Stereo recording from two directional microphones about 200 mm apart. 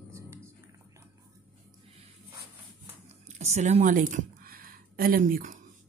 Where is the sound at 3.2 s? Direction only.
35° right (ahead or behind).